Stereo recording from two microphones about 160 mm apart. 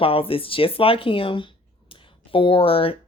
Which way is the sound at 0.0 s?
35° left (ahead or behind).